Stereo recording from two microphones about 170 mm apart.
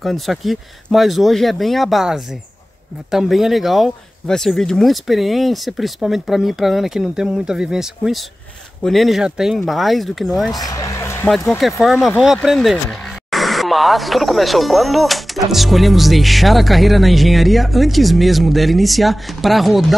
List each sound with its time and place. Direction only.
0.0 s speech: centre (ahead or behind)
10.5 s a sound: 20° left (ahead or behind)
11.2 s speech: centre (ahead or behind)